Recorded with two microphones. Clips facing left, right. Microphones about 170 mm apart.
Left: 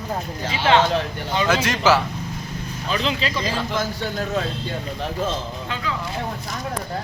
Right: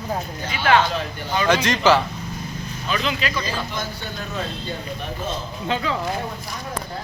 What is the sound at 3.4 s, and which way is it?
Speech, 90° left.